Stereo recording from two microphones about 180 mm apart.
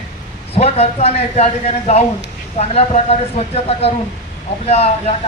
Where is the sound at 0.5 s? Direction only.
35° left (ahead or behind).